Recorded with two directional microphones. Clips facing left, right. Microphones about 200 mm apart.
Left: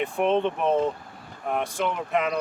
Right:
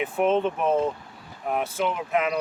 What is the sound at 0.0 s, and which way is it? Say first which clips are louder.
Speech: right 1 dB; 5° right (ahead or behind).